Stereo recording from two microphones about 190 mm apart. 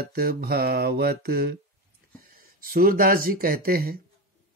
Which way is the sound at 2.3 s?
50° right (ahead or behind).